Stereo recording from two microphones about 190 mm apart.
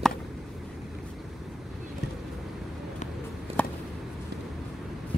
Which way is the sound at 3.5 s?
30° right (ahead or behind).